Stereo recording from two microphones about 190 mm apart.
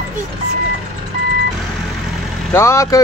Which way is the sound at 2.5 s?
15° left (ahead or behind).